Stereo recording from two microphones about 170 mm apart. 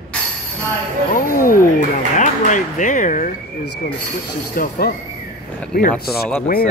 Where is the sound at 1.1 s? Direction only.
55° left (ahead or behind).